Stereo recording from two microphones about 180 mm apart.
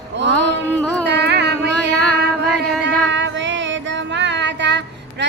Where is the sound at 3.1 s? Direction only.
90° right.